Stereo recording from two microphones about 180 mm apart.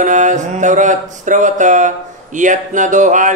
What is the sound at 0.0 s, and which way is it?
Speech, 40° right (ahead or behind).